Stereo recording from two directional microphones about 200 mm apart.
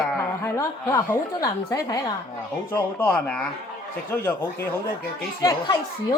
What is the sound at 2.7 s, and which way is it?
Speech, 10° left (ahead or behind).